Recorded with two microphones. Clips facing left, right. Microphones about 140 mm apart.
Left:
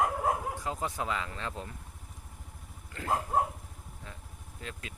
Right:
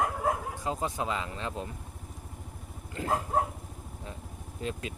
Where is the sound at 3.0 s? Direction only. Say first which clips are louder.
Right 3 dB; 20° right (ahead or behind).